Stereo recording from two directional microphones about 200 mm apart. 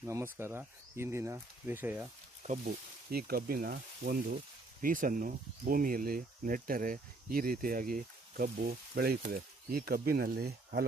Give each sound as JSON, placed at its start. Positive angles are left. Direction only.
{"t": 0.0, "sound": "speech", "side_deg": -15}
{"t": 3.1, "sound": "speech", "side_deg": -50}